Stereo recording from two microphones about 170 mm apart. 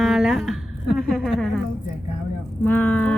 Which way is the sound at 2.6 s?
10° left (ahead or behind).